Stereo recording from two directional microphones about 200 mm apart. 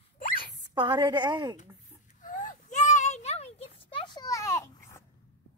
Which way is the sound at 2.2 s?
40° left (ahead or behind).